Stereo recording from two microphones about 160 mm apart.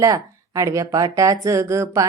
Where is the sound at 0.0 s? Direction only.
20° right (ahead or behind).